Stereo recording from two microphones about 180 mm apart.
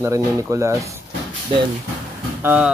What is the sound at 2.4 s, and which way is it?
Speech, 10° right (ahead or behind).